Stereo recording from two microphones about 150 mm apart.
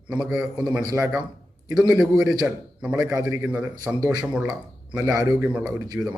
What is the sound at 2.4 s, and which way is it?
A man's voice, 10° right (ahead or behind).